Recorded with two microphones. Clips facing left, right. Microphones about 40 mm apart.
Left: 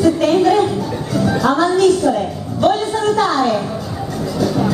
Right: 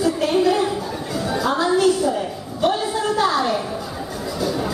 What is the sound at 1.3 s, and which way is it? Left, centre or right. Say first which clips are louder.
Speech: left 5 dB; centre.